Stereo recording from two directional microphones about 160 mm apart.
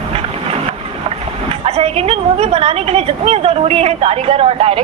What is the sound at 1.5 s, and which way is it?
A woman's voice, 40° right (ahead or behind).